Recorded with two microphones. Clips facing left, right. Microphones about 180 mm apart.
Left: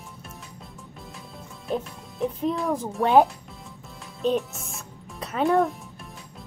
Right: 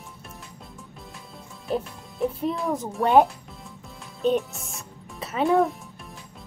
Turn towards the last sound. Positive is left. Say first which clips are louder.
# right 1 dB
turn(degrees=0)  # may be behind; listen again after turning